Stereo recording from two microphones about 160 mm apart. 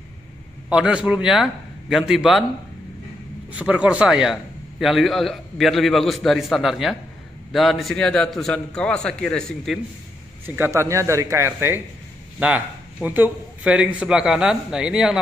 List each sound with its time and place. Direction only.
0.7 s a man's voice: 5° right (ahead or behind)
3.5 s a man's voice: 10° right (ahead or behind)
10.4 s a man's voice: 15° right (ahead or behind)